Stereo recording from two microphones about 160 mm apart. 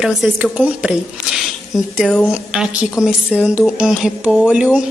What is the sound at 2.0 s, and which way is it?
Speech, 5° left (ahead or behind).